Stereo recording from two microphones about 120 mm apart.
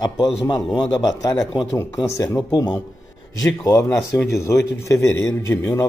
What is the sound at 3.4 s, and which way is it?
A man's voice, 30° left (ahead or behind).